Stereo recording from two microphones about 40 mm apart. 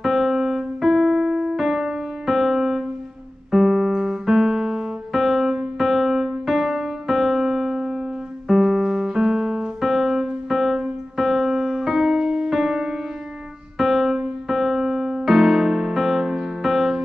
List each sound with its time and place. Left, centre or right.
0.0 s piano: centre
1.2 s piano: centre
1.6 s music: centre
4.4 s music: centre
8.5 s music: centre
12.2 s music: centre
13.7 s music: centre